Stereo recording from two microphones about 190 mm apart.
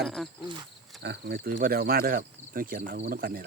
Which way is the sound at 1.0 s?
60° right (ahead or behind).